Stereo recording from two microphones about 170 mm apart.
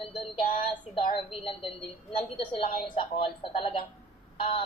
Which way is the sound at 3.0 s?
30° left (ahead or behind).